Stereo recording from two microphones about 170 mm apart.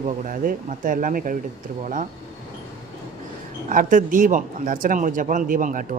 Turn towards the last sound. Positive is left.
turn(degrees=-50)  # may be behind; listen again after turning